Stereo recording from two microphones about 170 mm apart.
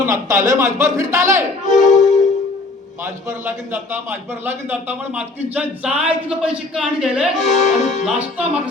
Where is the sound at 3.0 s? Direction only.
15° right (ahead or behind).